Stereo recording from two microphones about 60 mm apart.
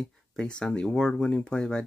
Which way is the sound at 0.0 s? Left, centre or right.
Centre.